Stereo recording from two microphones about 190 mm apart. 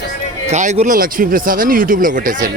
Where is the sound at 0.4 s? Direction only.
35° right (ahead or behind).